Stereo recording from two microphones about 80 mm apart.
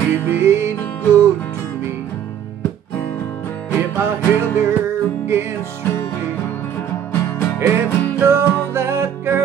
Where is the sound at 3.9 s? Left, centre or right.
Right.